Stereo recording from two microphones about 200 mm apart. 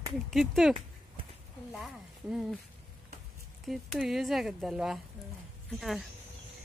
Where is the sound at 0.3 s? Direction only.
Centre (ahead or behind).